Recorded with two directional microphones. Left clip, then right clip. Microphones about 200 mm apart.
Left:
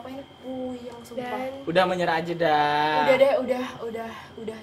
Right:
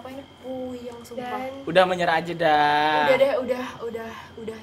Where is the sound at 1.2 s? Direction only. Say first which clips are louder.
Even; 10° left (ahead or behind).